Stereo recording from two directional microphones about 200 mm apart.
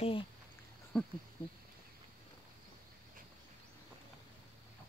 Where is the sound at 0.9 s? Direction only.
5° left (ahead or behind).